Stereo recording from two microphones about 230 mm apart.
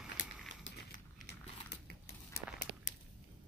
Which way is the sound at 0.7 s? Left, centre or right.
Left.